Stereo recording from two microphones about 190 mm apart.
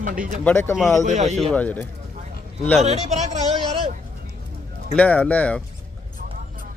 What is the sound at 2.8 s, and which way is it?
Speech, 35° right (ahead or behind).